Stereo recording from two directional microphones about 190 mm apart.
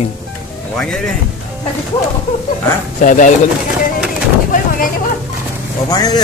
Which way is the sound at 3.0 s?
40° left (ahead or behind).